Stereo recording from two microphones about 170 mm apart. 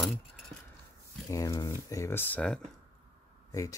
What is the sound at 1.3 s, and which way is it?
Speech, 20° left (ahead or behind).